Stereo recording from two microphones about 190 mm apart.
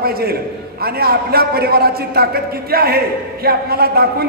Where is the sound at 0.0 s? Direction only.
55° right (ahead or behind).